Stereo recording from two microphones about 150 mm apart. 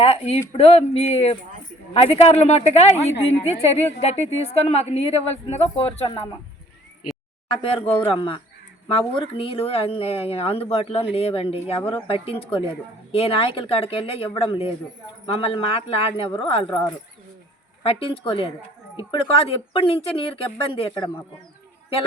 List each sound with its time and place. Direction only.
0.0 s a woman's voice: 45° left (ahead or behind)
7.5 s speech: 35° left (ahead or behind)
17.8 s speech: 40° left (ahead or behind)